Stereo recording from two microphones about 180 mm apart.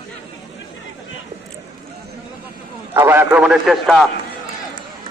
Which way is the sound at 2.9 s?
10° right (ahead or behind).